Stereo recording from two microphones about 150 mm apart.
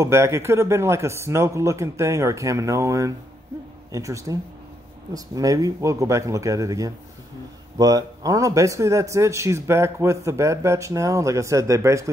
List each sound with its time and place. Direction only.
0.0 s a man's voice: 20° right (ahead or behind)